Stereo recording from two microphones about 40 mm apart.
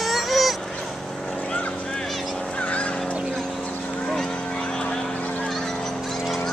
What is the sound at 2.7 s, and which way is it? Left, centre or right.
Fowl, left.